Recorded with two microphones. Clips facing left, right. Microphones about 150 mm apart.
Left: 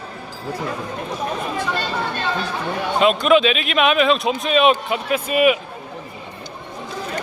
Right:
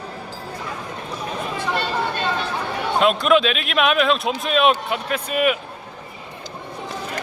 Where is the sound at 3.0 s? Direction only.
Centre (ahead or behind).